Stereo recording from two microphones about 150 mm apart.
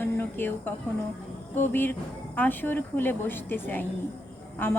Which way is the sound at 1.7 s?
15° left (ahead or behind).